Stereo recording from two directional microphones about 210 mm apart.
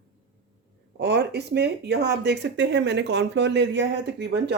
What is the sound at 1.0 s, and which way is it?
Speech, 50° right (ahead or behind).